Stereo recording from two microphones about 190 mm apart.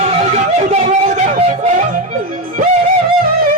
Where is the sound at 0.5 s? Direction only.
40° right (ahead or behind).